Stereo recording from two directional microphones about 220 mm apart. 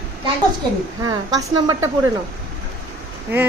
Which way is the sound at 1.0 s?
20° right (ahead or behind).